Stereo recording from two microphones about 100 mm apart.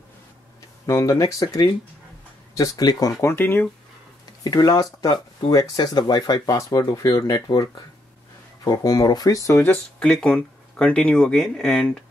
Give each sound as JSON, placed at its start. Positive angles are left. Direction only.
{"t": 0.8, "sound": "speech", "side_deg": 30}
{"t": 3.2, "sound": "speech", "side_deg": 25}
{"t": 4.4, "sound": "speech", "side_deg": 40}
{"t": 9.6, "sound": "speech", "side_deg": 15}